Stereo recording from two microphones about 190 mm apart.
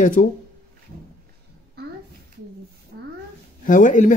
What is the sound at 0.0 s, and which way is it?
Speech, 45° left (ahead or behind).